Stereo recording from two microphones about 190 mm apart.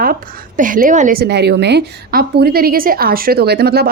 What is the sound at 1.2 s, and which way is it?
A woman's voice, 60° right (ahead or behind).